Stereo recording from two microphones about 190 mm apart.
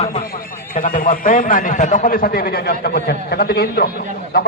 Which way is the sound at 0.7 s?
45° left (ahead or behind).